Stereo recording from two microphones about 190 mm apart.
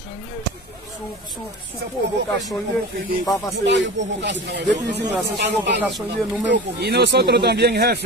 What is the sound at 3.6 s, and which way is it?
Speech, 70° right (ahead or behind).